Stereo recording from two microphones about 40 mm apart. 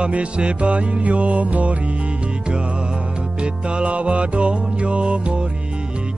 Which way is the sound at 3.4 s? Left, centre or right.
Right.